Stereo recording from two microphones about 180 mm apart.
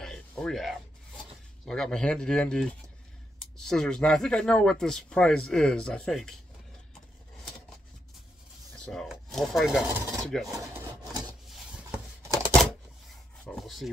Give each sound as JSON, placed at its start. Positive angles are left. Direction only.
{"t": 0.0, "sound": "a sound", "side_deg": 5}
{"t": 1.7, "sound": "speech", "side_deg": 5}
{"t": 8.7, "sound": "speech", "side_deg": 5}
{"t": 10.7, "sound": "filing", "side_deg": -20}
{"t": 12.2, "sound": "a sound", "side_deg": -15}
{"t": 13.4, "sound": "rub", "side_deg": 0}